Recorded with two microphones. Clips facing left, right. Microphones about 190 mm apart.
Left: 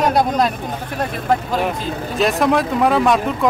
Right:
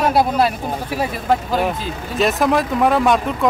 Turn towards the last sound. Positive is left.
turn(degrees=0)  # may be behind; listen again after turning